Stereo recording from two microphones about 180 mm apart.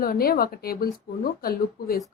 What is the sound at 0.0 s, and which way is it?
A woman's voice, 55° left (ahead or behind).